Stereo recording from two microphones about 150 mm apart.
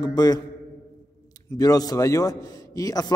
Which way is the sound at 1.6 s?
25° left (ahead or behind).